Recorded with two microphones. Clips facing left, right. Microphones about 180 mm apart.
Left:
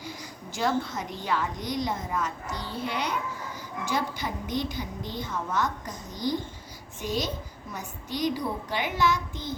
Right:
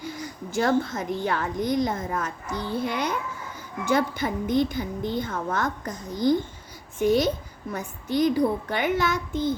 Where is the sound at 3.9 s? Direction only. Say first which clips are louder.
Right 7 dB; 55° right (ahead or behind).